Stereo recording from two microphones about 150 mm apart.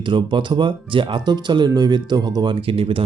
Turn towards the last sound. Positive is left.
turn(degrees=-35)  # may be behind; listen again after turning